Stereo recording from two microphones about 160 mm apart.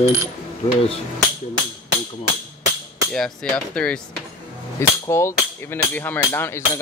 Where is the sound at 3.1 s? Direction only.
5° left (ahead or behind).